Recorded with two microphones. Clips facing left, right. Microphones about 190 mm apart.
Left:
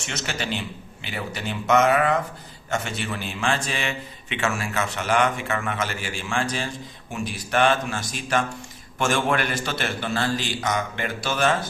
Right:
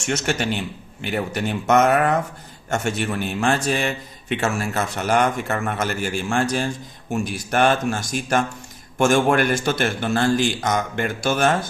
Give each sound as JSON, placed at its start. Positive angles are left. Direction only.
{"t": 0.0, "sound": "a man's voice", "side_deg": -50}